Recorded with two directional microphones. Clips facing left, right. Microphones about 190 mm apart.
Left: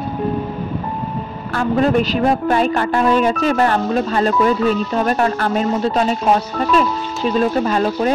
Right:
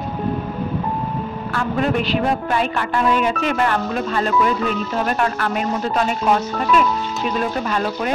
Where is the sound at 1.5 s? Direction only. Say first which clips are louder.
Left 5 dB; 40° left (ahead or behind).